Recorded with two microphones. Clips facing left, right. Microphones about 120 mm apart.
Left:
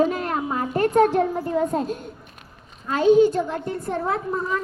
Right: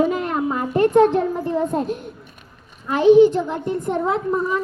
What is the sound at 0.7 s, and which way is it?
Speech, 20° right (ahead or behind).